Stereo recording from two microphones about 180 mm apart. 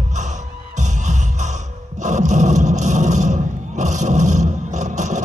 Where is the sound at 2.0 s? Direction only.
40° right (ahead or behind).